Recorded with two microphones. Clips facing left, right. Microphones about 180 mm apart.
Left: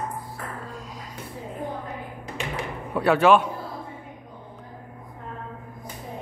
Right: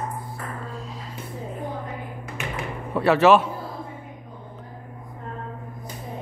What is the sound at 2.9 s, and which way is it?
Speech, 5° right (ahead or behind).